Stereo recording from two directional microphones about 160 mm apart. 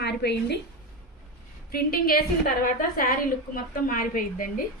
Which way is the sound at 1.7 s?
70° left (ahead or behind).